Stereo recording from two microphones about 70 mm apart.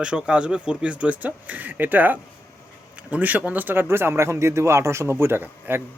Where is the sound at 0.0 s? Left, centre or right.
Centre.